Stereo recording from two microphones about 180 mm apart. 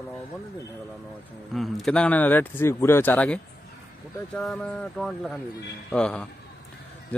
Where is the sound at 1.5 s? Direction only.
Centre (ahead or behind).